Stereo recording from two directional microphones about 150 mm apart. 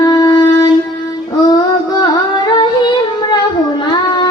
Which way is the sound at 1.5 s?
25° left (ahead or behind).